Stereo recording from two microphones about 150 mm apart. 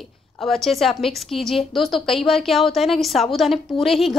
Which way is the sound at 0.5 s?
Centre (ahead or behind).